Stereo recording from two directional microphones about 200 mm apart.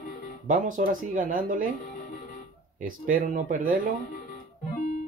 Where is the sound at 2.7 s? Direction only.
40° right (ahead or behind).